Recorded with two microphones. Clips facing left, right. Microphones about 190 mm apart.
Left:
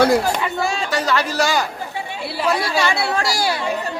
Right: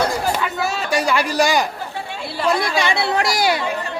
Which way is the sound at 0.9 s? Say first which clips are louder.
Right 1 dB; 10° right (ahead or behind).